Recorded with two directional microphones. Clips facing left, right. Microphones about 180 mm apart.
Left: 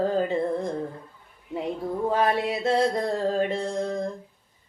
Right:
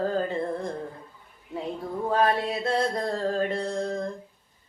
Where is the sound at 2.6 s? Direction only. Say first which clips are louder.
Left 5 dB; 20° left (ahead or behind).